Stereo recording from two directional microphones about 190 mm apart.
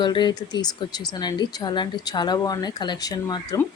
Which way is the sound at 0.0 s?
25° left (ahead or behind).